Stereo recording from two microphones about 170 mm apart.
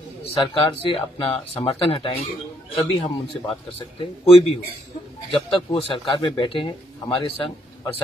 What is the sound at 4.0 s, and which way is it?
Speech, 35° left (ahead or behind).